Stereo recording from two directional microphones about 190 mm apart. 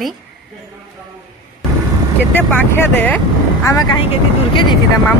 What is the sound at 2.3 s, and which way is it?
Speech, 10° left (ahead or behind).